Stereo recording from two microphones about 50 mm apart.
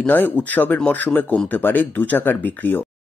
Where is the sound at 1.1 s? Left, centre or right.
Centre.